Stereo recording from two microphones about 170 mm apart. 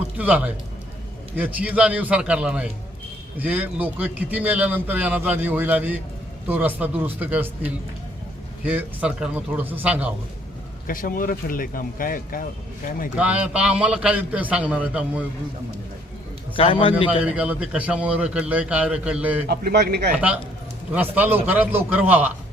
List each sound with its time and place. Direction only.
0.2 s a man's voice: 10° right (ahead or behind)
10.8 s speech: 55° left (ahead or behind)
13.1 s a man's voice: 5° right (ahead or behind)
16.6 s a man's voice: 30° left (ahead or behind)
17.2 s a man's voice: 10° right (ahead or behind)
19.5 s speech: 65° right (ahead or behind)
20.1 s a man's voice: 10° right (ahead or behind)